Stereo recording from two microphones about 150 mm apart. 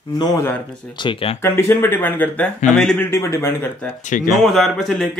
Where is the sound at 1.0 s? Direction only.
35° left (ahead or behind).